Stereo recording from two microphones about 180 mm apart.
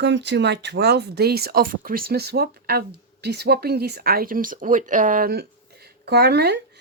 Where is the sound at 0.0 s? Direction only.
75° right (ahead or behind).